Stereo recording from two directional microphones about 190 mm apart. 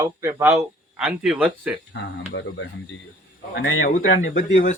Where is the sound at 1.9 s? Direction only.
75° left (ahead or behind).